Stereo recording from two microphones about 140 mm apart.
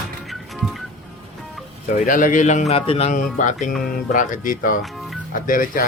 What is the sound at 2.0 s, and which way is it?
A man's voice, 75° left (ahead or behind).